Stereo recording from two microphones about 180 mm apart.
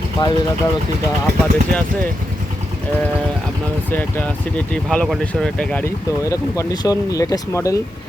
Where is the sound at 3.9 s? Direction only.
10° left (ahead or behind).